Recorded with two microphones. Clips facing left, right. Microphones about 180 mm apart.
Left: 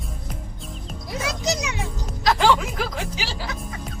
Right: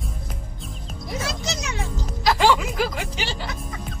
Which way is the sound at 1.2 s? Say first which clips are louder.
Left 6 dB; 15° left (ahead or behind).